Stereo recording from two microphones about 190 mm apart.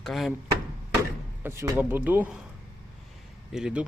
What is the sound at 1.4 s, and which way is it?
Speech, 15° right (ahead or behind).